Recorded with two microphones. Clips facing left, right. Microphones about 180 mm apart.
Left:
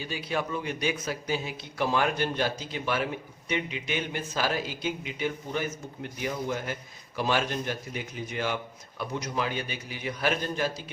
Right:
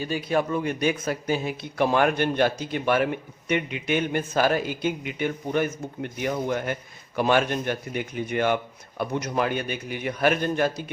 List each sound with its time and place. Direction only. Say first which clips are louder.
0.0 s a man's voice: right 7 dB; 50° right (ahead or behind)